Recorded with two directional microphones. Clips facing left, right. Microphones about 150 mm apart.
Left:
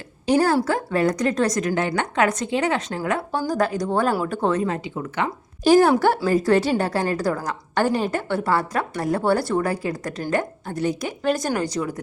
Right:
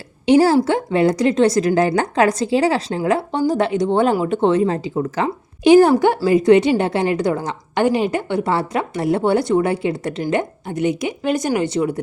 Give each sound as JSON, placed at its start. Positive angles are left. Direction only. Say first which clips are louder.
{"t": 0.3, "sound": "a woman's voice", "louder": "right 6 dB", "side_deg": -25}
{"t": 5.9, "sound": "a woman's voice", "louder": "right 4 dB", "side_deg": -15}